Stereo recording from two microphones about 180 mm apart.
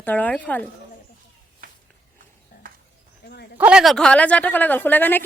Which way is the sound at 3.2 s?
60° left (ahead or behind).